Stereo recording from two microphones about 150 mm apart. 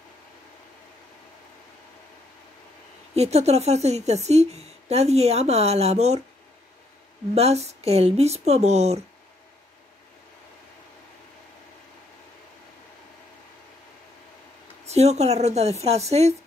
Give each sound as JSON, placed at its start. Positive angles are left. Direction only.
{"t": 3.2, "sound": "a woman's voice", "side_deg": -45}
{"t": 7.3, "sound": "a woman's voice", "side_deg": -45}
{"t": 14.9, "sound": "a woman's voice", "side_deg": -45}